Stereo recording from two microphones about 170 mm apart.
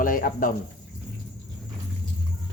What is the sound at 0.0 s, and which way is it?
Speech, 55° left (ahead or behind).